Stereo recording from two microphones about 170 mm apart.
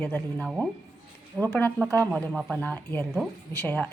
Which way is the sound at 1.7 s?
15° right (ahead or behind).